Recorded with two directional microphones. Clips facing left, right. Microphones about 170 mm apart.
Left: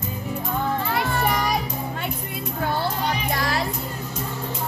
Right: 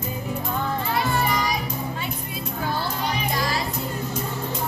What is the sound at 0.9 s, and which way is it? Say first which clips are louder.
Children playing: right 2 dB; 60° left (ahead or behind).